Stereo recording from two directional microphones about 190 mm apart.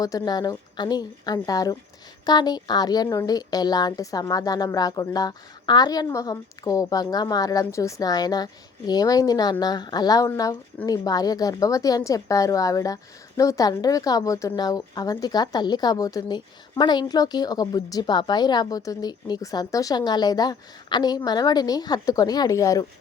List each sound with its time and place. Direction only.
0.0 s a woman's voice: 20° left (ahead or behind)